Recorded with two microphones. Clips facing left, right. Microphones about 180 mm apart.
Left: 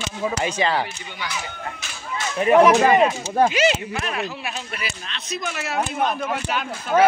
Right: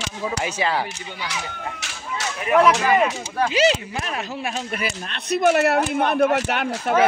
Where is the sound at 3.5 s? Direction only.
35° right (ahead or behind); by 6.9 s 65° right (ahead or behind).